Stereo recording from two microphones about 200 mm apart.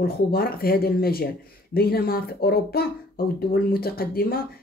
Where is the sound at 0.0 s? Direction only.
50° left (ahead or behind).